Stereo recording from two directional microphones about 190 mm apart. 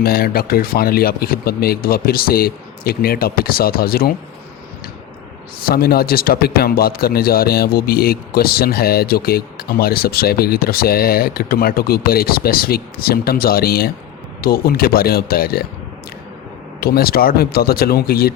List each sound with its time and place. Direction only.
0.0 s speech: 55° left (ahead or behind)
5.6 s speech: 55° left (ahead or behind)
16.8 s speech: 55° left (ahead or behind)